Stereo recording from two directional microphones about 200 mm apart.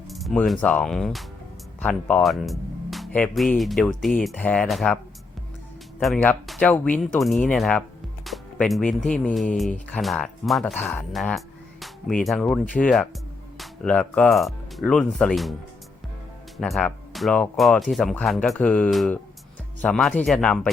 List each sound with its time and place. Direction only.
0.1 s speech: centre (ahead or behind)
6.0 s speech: 5° left (ahead or behind)
16.6 s speech: centre (ahead or behind)